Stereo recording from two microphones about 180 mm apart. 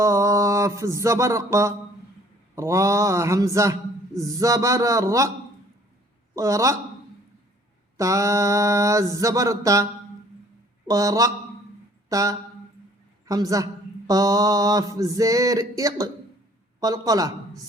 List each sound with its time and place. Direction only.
0.0 s a sound: 15° right (ahead or behind)
2.6 s speech: 15° right (ahead or behind)
6.3 s speech: 20° right (ahead or behind)
7.9 s speech: 15° right (ahead or behind)
10.8 s mantra: 20° right (ahead or behind)
12.0 s a woman's voice: 20° right (ahead or behind)
14.1 s mantra: 20° right (ahead or behind)